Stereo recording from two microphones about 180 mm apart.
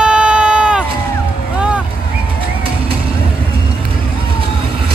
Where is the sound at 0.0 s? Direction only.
5° right (ahead or behind).